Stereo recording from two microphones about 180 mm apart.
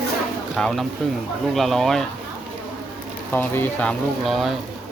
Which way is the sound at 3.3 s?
10° left (ahead or behind).